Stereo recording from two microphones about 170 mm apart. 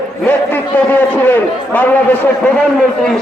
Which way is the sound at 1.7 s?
10° left (ahead or behind).